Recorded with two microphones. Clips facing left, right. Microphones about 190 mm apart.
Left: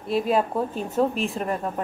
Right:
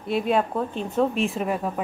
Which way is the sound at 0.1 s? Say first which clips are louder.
Even; centre (ahead or behind).